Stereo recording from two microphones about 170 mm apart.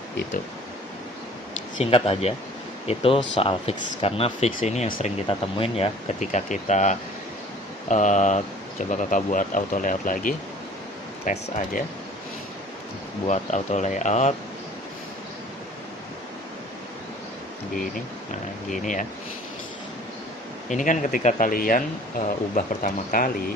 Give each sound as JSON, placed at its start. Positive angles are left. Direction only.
{"t": 1.8, "sound": "speech", "side_deg": 35}
{"t": 13.2, "sound": "speech", "side_deg": 45}
{"t": 18.7, "sound": "speech", "side_deg": 50}
{"t": 20.7, "sound": "speech", "side_deg": 50}